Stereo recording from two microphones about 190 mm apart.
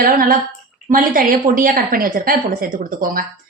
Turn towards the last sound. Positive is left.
turn(degrees=-50)  # may be behind; listen again after turning